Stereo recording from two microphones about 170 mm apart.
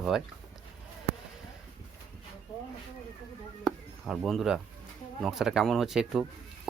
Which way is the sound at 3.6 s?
Centre (ahead or behind).